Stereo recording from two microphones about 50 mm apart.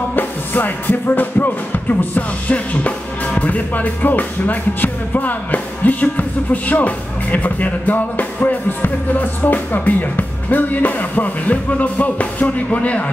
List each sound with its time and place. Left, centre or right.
0.1 s music: left